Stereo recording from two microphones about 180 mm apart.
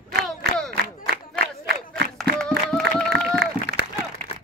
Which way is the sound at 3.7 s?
65° right (ahead or behind).